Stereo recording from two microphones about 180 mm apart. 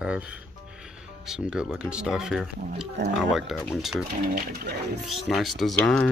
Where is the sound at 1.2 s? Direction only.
5° right (ahead or behind).